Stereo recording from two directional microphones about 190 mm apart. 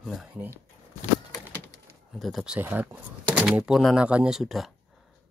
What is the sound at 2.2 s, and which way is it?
Speech, centre (ahead or behind).